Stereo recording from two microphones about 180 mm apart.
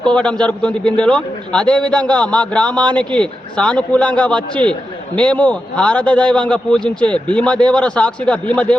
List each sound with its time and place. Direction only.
0.0 s a man's voice: 5° left (ahead or behind)